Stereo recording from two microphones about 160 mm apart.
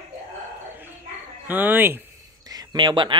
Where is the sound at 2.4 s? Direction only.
25° right (ahead or behind).